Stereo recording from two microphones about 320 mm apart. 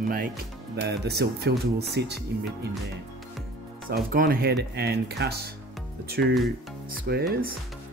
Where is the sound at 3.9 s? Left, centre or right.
Right.